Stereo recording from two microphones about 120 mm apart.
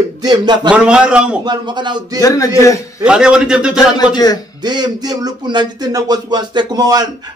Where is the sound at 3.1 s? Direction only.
5° right (ahead or behind).